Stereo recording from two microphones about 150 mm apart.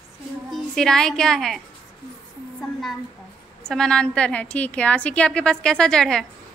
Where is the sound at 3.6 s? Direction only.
5° left (ahead or behind).